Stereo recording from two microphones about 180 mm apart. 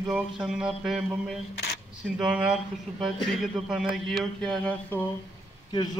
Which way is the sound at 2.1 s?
5° right (ahead or behind).